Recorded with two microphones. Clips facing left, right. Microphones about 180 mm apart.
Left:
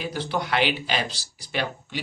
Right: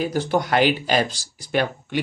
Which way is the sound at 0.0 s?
45° right (ahead or behind).